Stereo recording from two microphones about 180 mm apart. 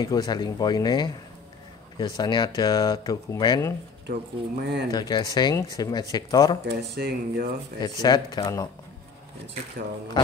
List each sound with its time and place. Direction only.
0.0 s speech: 20° left (ahead or behind)
4.1 s speech: 60° right (ahead or behind)
4.9 s speech: 25° left (ahead or behind)
7.0 s speech: 60° right (ahead or behind)
7.8 s speech: 25° left (ahead or behind)